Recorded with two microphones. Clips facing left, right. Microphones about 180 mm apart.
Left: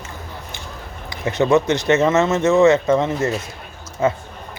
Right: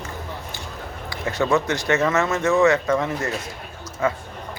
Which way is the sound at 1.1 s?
20° left (ahead or behind).